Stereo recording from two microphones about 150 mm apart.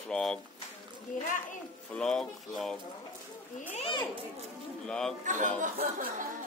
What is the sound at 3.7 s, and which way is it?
Children playing, 45° left (ahead or behind).